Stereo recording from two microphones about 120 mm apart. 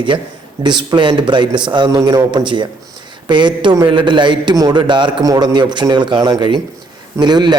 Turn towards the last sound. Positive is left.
turn(degrees=-35)  # may be behind; listen again after turning